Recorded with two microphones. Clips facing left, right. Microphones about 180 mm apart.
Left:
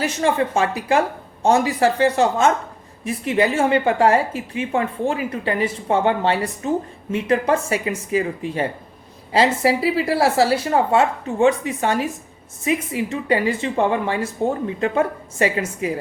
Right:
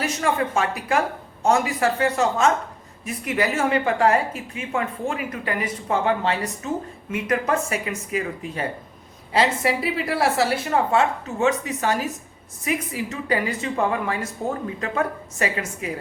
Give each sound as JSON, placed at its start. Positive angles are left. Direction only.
{"t": 0.0, "sound": "a woman's voice", "side_deg": 30}